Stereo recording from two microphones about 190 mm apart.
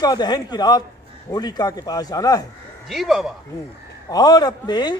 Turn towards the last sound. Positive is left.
turn(degrees=20)  # may be behind; listen again after turning